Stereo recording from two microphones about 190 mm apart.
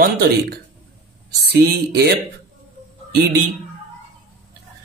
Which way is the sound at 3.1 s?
60° right (ahead or behind).